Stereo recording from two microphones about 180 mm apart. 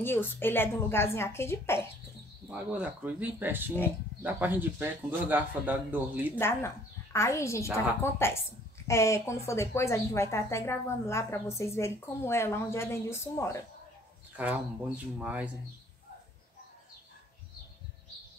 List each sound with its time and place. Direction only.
0.0 s a woman's voice: 10° left (ahead or behind)
2.5 s speech: 10° right (ahead or behind)
6.3 s a woman's voice: 15° left (ahead or behind)
14.3 s speech: 10° right (ahead or behind)